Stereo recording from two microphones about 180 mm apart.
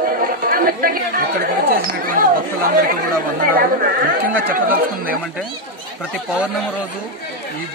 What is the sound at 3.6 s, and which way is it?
Speech, 50° right (ahead or behind).